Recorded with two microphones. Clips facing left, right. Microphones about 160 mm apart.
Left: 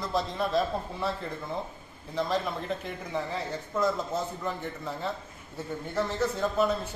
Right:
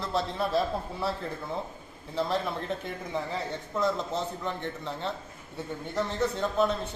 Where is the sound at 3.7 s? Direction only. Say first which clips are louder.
Left 1 dB; centre (ahead or behind).